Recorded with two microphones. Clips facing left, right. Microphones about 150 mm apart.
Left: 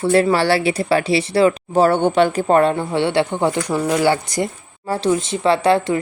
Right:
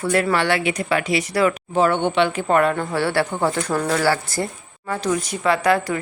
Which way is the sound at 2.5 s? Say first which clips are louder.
Left 3 dB; 30° left (ahead or behind).